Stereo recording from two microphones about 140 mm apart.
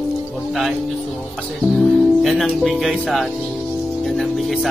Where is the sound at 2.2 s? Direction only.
Centre (ahead or behind).